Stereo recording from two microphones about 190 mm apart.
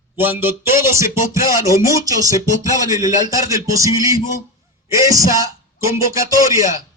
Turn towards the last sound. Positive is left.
turn(degrees=-15)  # may be behind; listen again after turning